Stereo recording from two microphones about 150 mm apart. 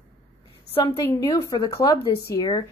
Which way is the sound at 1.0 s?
25° left (ahead or behind).